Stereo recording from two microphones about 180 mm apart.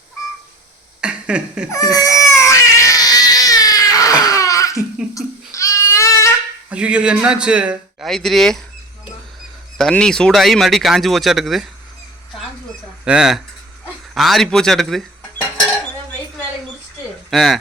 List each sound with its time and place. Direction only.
1.0 s a sound: 5° right (ahead or behind)
1.9 s baby cry: 20° left (ahead or behind)
5.1 s goat: 15° left (ahead or behind)
6.7 s a man's voice: 5° right (ahead or behind)
9.7 s a man's voice: 5° left (ahead or behind)
13.1 s a man's voice: 5° right (ahead or behind)
17.3 s a man's voice: centre (ahead or behind)